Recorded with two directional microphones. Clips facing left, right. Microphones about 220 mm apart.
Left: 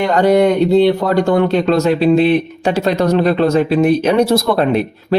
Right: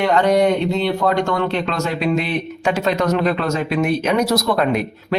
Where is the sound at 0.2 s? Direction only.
40° left (ahead or behind).